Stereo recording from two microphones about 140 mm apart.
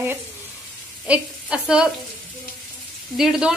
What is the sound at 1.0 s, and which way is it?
Speech, 5° right (ahead or behind).